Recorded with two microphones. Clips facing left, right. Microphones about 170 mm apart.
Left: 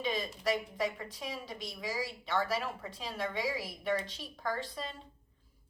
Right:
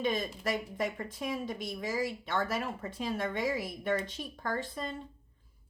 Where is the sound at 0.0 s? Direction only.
50° right (ahead or behind).